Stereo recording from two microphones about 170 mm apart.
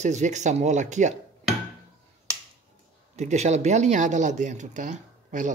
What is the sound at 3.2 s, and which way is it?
Speech, 40° right (ahead or behind).